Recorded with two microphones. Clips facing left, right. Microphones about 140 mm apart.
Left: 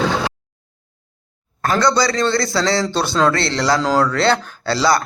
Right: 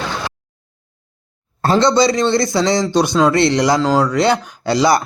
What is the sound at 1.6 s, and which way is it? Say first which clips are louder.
A man's voice: right 4 dB; 25° right (ahead or behind).